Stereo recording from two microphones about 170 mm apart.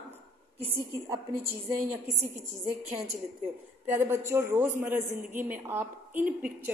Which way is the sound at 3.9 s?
15° right (ahead or behind).